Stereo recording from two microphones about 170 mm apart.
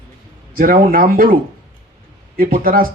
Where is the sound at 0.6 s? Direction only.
55° right (ahead or behind).